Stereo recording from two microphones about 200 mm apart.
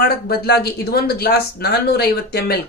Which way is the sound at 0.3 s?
55° left (ahead or behind).